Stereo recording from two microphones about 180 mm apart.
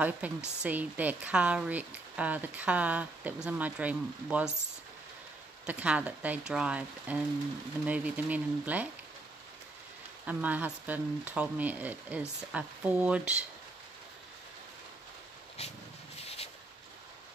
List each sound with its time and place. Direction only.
0.2 s speech: 10° right (ahead or behind)
5.7 s speech: 5° right (ahead or behind)
10.2 s speech: 10° right (ahead or behind)
15.6 s dog: 35° left (ahead or behind)
16.2 s a sound: 35° left (ahead or behind)